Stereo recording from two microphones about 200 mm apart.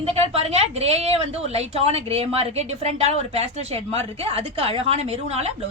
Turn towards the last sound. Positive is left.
turn(degrees=-30)  # may be behind; listen again after turning